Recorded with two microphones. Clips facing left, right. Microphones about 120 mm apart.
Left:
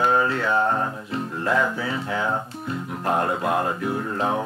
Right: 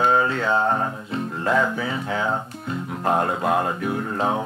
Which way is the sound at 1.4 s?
25° right (ahead or behind).